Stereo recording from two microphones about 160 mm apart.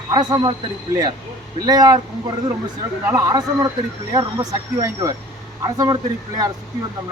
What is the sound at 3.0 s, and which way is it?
Speech, 20° right (ahead or behind).